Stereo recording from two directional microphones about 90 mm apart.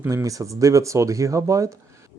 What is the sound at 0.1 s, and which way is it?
Speech, 40° right (ahead or behind).